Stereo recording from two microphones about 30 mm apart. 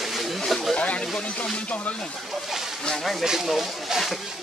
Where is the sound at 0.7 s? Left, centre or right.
Left.